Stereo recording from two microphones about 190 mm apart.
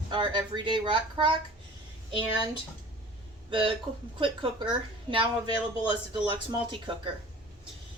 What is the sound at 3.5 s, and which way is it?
A woman's voice, 25° right (ahead or behind).